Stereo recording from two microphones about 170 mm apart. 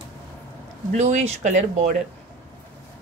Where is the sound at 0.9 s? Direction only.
40° right (ahead or behind).